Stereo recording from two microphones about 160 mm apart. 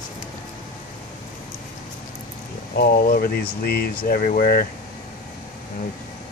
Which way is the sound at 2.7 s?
70° left (ahead or behind).